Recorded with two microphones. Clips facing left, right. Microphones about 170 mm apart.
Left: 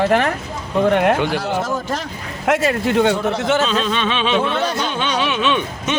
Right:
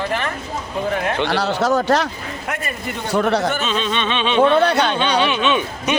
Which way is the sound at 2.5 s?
90° left.